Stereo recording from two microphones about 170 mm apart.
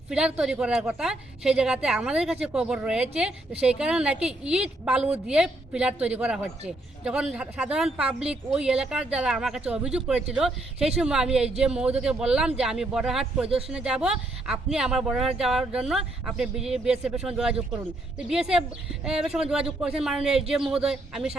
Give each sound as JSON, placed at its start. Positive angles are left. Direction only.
{"t": 0.1, "sound": "speech", "side_deg": -5}